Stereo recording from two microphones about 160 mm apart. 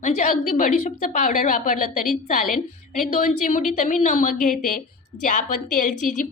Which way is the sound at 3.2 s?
50° left (ahead or behind).